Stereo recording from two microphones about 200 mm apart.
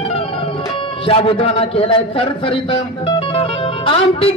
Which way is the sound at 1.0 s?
30° left (ahead or behind).